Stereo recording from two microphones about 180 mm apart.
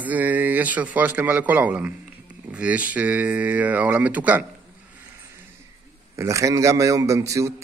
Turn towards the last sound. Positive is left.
turn(degrees=-15)  # may be behind; listen again after turning